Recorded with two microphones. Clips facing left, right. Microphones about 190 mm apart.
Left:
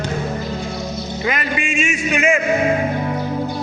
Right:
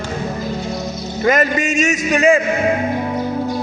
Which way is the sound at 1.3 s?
45° right (ahead or behind).